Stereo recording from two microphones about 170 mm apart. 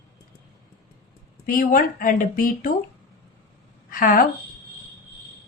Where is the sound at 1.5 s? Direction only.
55° left (ahead or behind).